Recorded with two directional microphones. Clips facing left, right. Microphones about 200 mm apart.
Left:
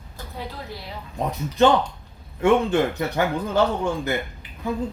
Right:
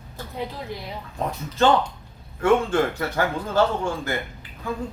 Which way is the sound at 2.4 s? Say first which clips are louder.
Left 1 dB; 20° left (ahead or behind).